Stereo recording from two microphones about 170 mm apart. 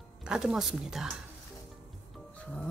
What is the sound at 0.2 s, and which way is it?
Speech, 5° right (ahead or behind).